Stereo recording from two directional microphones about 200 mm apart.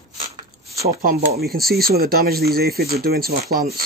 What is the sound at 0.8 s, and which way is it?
Speech, 50° right (ahead or behind).